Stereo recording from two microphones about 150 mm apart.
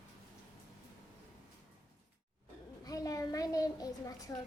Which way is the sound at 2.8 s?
25° left (ahead or behind).